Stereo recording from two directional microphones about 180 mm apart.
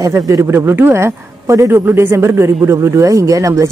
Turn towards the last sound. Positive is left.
turn(degrees=-15)  # may be behind; listen again after turning